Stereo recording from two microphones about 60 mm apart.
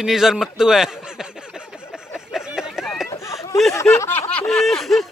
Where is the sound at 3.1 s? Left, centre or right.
Left.